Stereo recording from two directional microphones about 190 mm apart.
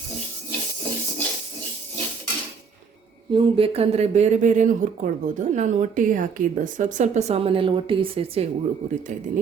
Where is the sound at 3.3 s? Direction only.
25° right (ahead or behind).